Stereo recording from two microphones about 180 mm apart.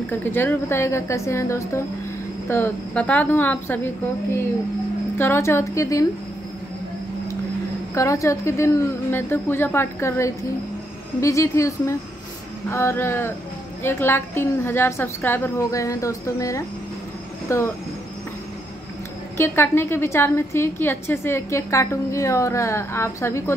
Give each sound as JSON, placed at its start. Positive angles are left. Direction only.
{"t": 0.1, "sound": "a woman's voice", "side_deg": 10}
{"t": 5.1, "sound": "a woman's voice", "side_deg": 15}
{"t": 7.9, "sound": "a woman's voice", "side_deg": 15}
{"t": 19.3, "sound": "a woman's voice", "side_deg": 15}